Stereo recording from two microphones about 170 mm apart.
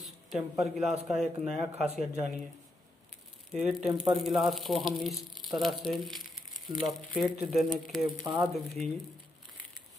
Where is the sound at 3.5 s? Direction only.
5° right (ahead or behind).